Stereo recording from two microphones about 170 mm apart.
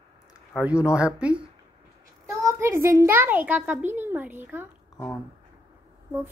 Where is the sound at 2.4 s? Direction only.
20° right (ahead or behind).